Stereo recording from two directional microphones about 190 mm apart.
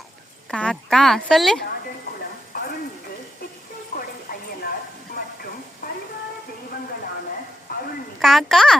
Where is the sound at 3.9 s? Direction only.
50° left (ahead or behind).